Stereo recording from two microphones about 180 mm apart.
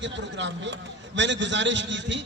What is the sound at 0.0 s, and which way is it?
A man's voice, 85° right.